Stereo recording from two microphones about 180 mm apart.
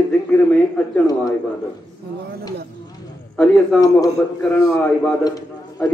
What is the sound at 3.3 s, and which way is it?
A man's voice, 5° left (ahead or behind).